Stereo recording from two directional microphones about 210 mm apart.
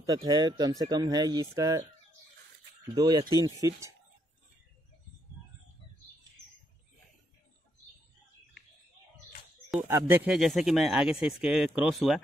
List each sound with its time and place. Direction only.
0.0 s speech: 20° right (ahead or behind)
9.7 s speech: 10° right (ahead or behind)